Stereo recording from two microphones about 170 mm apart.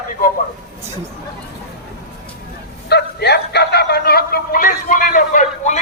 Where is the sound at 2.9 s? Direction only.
75° left (ahead or behind).